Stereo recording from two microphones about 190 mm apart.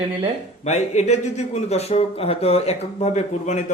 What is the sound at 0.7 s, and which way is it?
Speech, 35° left (ahead or behind).